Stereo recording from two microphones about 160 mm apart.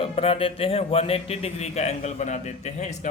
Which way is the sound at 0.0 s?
35° left (ahead or behind).